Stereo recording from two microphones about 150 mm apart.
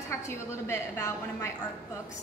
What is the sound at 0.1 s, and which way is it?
A woman's voice, 20° left (ahead or behind).